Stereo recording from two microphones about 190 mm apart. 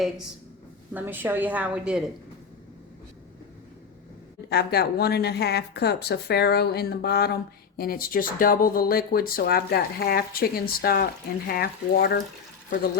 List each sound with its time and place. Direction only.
0.9 s a woman's voice: 10° right (ahead or behind)
4.4 s speech: 55° left (ahead or behind)